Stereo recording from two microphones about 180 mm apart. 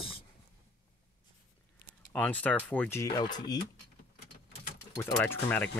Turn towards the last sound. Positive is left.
turn(degrees=10)  # may be behind; listen again after turning